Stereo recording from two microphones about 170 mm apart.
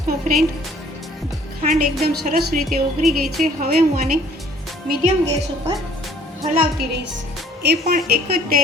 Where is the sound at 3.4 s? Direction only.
55° right (ahead or behind).